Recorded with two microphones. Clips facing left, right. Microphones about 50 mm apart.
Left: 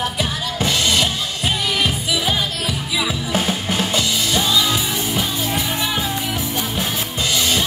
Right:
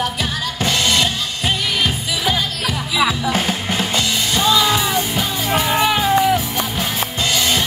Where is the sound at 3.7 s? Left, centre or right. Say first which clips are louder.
Even; right.